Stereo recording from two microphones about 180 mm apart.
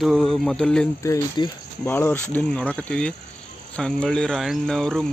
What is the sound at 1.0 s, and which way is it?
Speech, 20° left (ahead or behind).